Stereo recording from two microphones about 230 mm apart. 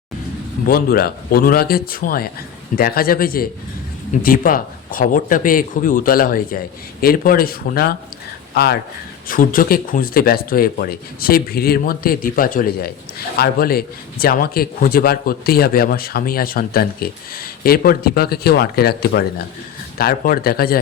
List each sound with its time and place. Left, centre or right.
0.7 s speech: left